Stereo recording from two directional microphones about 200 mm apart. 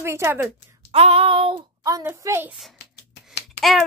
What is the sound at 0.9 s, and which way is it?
A child's voice, 30° right (ahead or behind).